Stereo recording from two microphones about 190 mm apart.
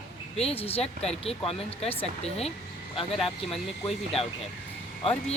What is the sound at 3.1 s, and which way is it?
Speech, centre (ahead or behind).